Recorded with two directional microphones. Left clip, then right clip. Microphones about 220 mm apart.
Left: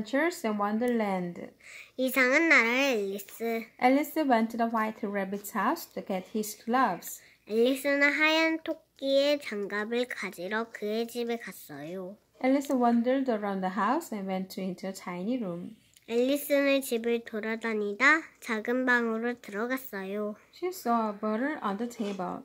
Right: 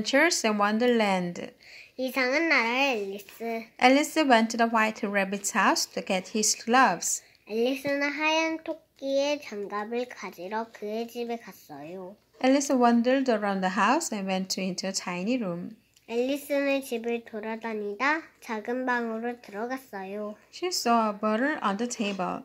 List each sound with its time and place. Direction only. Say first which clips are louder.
0.4 s a woman's voice: right 5 dB; 10° right (ahead or behind)
2.0 s a child's voice: left 2 dB; 45° left (ahead or behind)
3.8 s a woman's voice: right 4 dB; 5° right (ahead or behind)
7.4 s a child's voice: left 2 dB; 45° left (ahead or behind)
12.4 s a woman's voice: right 4 dB; 10° right (ahead or behind)
16.1 s a child's voice: left 1 dB; 40° left (ahead or behind)
20.6 s a woman's voice: right 4 dB; 15° right (ahead or behind)